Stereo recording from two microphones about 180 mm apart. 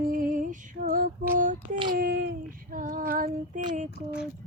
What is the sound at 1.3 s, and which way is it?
Female singing, 45° right (ahead or behind).